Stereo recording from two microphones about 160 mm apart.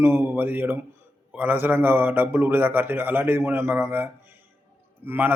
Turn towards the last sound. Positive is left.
turn(degrees=-10)  # may be behind; listen again after turning